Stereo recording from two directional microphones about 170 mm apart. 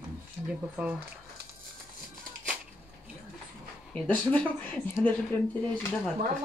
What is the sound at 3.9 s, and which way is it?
Speech, 10° left (ahead or behind).